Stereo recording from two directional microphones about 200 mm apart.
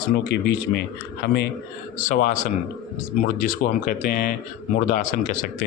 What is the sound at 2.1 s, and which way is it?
Speech, 45° left (ahead or behind).